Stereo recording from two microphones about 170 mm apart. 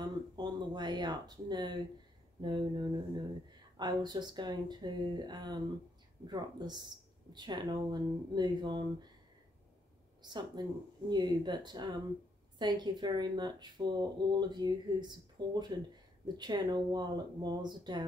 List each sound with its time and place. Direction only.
0.0 s speech: 25° right (ahead or behind)
10.2 s speech: 25° right (ahead or behind)